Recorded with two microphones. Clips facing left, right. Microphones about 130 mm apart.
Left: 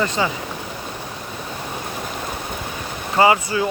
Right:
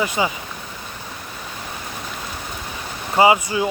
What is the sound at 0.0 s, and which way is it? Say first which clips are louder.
Speech: even; 10° right (ahead or behind).